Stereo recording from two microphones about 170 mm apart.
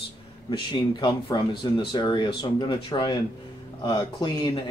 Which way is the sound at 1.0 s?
25° left (ahead or behind).